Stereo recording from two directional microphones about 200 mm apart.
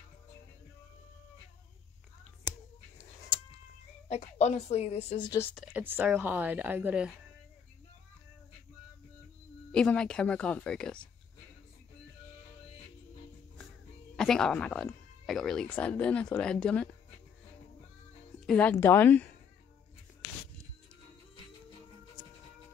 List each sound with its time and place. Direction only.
4.1 s a woman's voice: 35° left (ahead or behind)
5.4 s speech: centre (ahead or behind)
5.8 s speech: 10° right (ahead or behind)
9.7 s speech: 5° left (ahead or behind)
14.1 s speech: 5° left (ahead or behind)
18.5 s a woman's voice: 5° left (ahead or behind)